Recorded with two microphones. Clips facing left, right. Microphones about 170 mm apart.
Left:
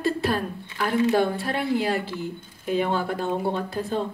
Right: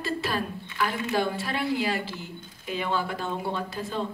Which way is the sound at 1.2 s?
50° left (ahead or behind).